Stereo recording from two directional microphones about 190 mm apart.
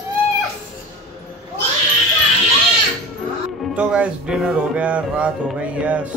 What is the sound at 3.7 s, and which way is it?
Speech, 5° right (ahead or behind).